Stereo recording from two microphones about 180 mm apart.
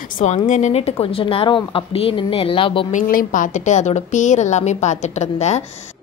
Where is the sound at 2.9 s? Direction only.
50° left (ahead or behind).